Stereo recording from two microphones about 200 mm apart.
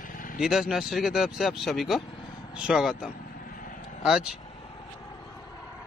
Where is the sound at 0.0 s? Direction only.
40° left (ahead or behind).